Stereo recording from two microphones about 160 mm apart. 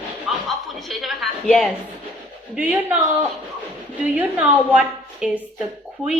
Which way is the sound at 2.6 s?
10° right (ahead or behind).